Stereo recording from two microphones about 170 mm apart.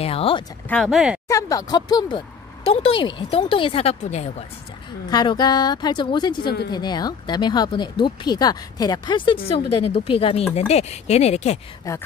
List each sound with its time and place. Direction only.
0.0 s speech: 35° left (ahead or behind)
0.7 s speech: centre (ahead or behind)
1.2 s speech: 20° left (ahead or behind); by 4.3 s 40° left (ahead or behind)
5.1 s speech: 25° left (ahead or behind)
11.9 s speech: 20° left (ahead or behind)